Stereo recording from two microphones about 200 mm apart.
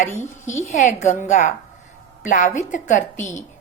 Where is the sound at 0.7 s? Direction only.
40° left (ahead or behind).